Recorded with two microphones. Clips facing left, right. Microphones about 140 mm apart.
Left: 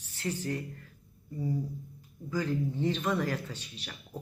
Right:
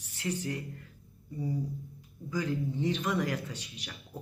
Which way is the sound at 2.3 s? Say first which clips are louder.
Left 1 dB; 15° right (ahead or behind).